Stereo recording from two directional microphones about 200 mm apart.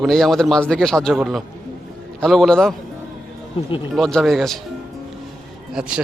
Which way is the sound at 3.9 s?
Centre (ahead or behind).